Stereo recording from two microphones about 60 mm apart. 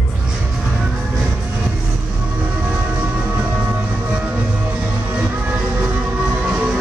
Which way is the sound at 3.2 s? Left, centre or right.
Right.